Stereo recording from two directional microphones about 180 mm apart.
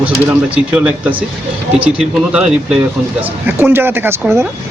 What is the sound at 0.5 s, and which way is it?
A man's voice, 5° right (ahead or behind).